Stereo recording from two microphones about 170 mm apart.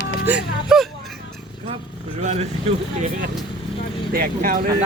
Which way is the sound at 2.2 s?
45° right (ahead or behind).